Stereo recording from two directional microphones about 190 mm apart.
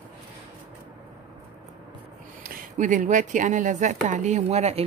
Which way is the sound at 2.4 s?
50° right (ahead or behind).